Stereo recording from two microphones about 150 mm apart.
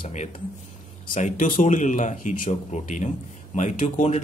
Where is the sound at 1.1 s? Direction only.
60° left (ahead or behind).